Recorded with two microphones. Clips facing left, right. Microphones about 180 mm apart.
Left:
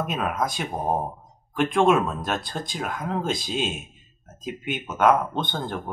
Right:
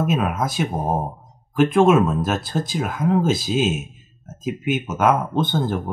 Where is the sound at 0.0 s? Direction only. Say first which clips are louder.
Right 5 dB; 5° right (ahead or behind).